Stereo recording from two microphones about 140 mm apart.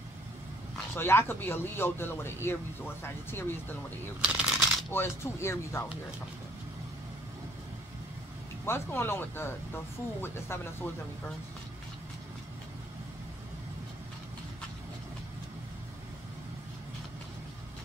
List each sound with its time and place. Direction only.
0.9 s speech: 15° left (ahead or behind)
4.2 s speech: 5° right (ahead or behind)
4.9 s speech: 20° left (ahead or behind)
8.6 s speech: 15° left (ahead or behind)